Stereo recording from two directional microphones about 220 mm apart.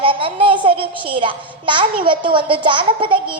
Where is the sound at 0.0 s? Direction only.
25° right (ahead or behind).